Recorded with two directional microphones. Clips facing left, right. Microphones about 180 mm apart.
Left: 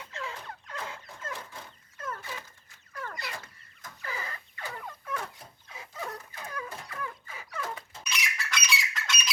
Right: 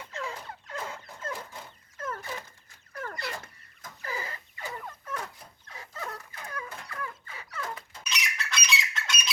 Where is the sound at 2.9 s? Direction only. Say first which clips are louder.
Right 2 dB; 45° right (ahead or behind).